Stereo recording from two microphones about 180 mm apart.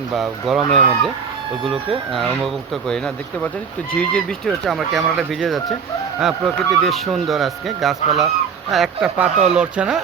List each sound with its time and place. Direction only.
0.1 s speech: centre (ahead or behind)
2.1 s speech: centre (ahead or behind)
9.2 s speech: 35° right (ahead or behind)
9.6 s speech: 5° right (ahead or behind)